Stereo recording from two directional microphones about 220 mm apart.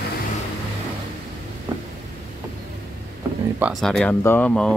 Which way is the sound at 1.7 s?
20° right (ahead or behind).